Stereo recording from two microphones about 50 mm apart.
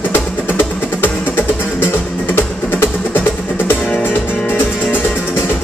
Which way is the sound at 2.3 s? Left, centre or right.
Left.